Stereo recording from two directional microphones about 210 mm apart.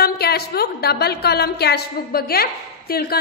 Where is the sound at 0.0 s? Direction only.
50° left (ahead or behind).